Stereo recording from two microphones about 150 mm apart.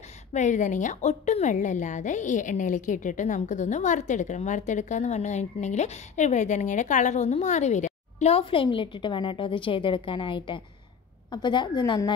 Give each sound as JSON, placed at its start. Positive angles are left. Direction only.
{"t": 0.3, "sound": "a woman's voice", "side_deg": 55}